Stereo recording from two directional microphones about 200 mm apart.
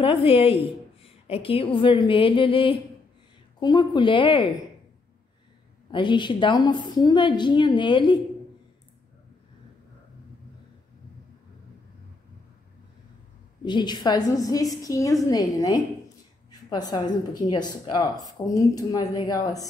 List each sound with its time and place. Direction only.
0.0 s a woman's voice: 25° left (ahead or behind)
5.9 s a woman's voice: 25° left (ahead or behind)
13.7 s a woman's voice: 20° left (ahead or behind)